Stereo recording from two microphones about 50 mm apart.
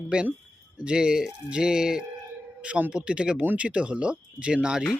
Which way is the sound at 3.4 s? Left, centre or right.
Right.